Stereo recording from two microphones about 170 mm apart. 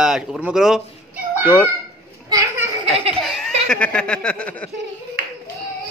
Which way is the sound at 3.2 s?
5° left (ahead or behind).